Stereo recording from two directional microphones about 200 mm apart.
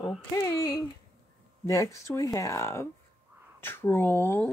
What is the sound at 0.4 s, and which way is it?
Speech, 15° left (ahead or behind).